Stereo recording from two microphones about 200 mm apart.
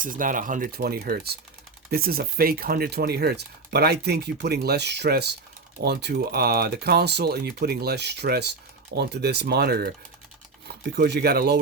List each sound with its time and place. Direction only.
0.0 s speech: 40° right (ahead or behind)